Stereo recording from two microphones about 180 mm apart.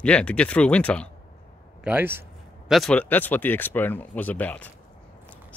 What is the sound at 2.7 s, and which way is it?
Speech, 5° left (ahead or behind).